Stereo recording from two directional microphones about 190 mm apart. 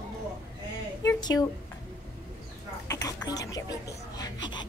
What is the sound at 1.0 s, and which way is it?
Speech, 20° left (ahead or behind).